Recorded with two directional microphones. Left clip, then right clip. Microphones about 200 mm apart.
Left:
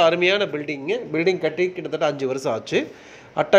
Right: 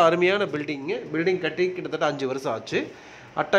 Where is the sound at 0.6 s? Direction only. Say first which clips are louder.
Left 4 dB; 5° left (ahead or behind).